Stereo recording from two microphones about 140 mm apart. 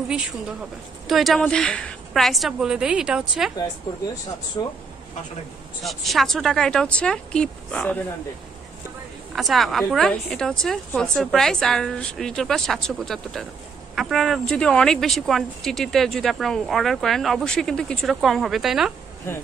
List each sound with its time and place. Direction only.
0.1 s a woman's voice: 5° right (ahead or behind)
4.6 s speech: 25° left (ahead or behind)
5.9 s speech: centre (ahead or behind)
9.3 s speech: centre (ahead or behind)
19.3 s speech: 15° left (ahead or behind)